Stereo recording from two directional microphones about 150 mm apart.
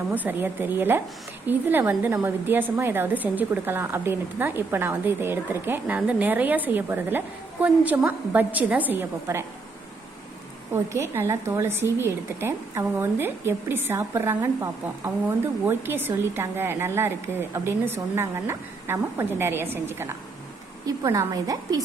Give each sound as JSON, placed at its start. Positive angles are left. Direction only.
{"t": 0.1, "sound": "a woman's voice", "side_deg": -10}
{"t": 10.7, "sound": "a woman's voice", "side_deg": -15}